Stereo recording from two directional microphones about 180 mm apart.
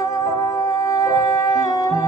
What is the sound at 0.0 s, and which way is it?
Music, 20° left (ahead or behind).